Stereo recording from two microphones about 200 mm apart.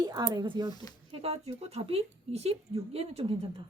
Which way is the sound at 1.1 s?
30° right (ahead or behind).